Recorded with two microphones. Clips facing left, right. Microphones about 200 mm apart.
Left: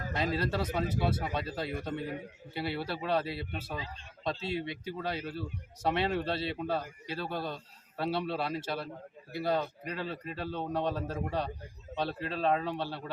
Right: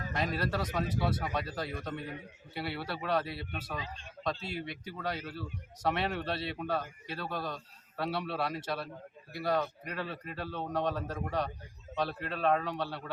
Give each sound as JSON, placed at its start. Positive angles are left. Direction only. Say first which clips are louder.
{"t": 0.2, "sound": "speech", "louder": "left 2 dB", "side_deg": 25}